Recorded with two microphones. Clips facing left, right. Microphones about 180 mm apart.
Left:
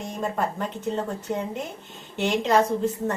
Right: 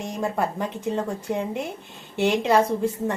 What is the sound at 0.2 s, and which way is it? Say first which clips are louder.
Speech: right 1 dB; 10° right (ahead or behind).